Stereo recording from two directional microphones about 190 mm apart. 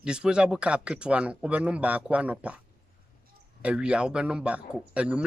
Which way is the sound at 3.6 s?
5° right (ahead or behind).